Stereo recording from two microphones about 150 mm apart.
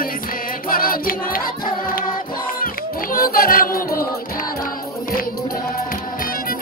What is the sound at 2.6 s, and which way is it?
Music, 70° left (ahead or behind).